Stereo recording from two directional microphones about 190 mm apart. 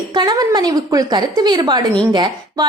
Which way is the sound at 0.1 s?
20° right (ahead or behind).